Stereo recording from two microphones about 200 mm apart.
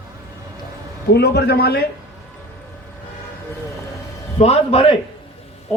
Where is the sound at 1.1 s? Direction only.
55° left (ahead or behind).